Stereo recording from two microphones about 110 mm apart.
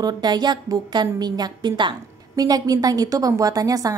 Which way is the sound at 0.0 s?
40° right (ahead or behind).